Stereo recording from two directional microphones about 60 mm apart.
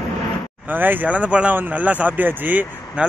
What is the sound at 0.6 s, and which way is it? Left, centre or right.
A man's voice, right.